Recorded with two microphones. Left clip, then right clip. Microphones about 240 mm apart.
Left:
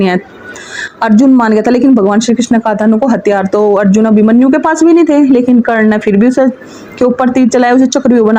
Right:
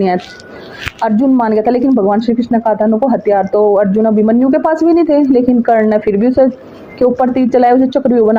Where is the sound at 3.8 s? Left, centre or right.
Left.